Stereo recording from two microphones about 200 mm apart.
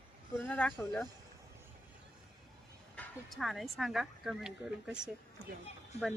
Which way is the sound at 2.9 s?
5° left (ahead or behind).